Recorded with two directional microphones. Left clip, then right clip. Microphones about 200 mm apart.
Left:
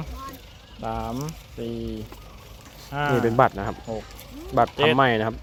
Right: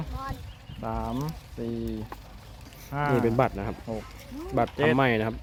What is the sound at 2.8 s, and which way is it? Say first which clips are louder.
Speech: left 3 dB; 5° left (ahead or behind).